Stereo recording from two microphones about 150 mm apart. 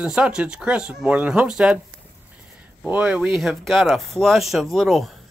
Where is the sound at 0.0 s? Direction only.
5° right (ahead or behind).